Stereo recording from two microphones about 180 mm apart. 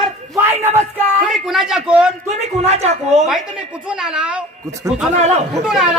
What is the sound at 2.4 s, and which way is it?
Speech, 40° right (ahead or behind).